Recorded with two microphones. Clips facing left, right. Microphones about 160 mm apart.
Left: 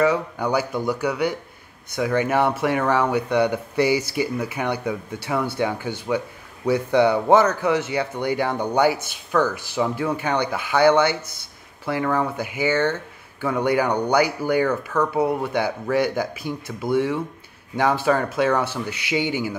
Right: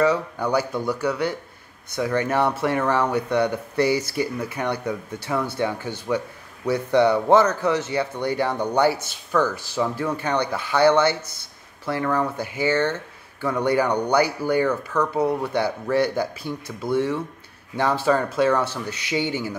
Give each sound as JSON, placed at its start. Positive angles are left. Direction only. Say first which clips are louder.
{"t": 0.0, "sound": "a man's voice", "louder": "even", "side_deg": 10}